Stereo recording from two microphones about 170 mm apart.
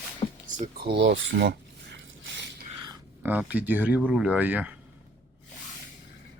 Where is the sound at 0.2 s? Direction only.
35° left (ahead or behind).